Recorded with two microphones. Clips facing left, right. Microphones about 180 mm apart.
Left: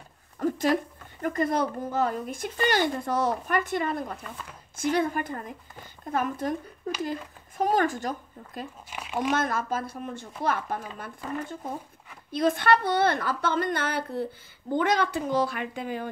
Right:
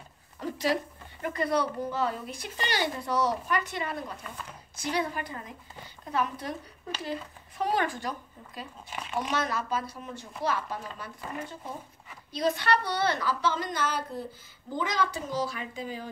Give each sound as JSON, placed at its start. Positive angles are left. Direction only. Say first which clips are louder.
{"t": 0.4, "sound": "a sound", "louder": "left 5 dB", "side_deg": 50}
{"t": 1.2, "sound": "speech", "louder": "left 2 dB", "side_deg": 45}
{"t": 8.9, "sound": "speech", "louder": "left 3 dB", "side_deg": 10}
{"t": 9.3, "sound": "speech", "louder": "left 3 dB", "side_deg": 50}